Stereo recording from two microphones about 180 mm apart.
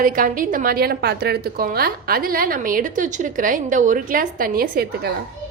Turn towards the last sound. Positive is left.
turn(degrees=-60)  # may be behind; listen again after turning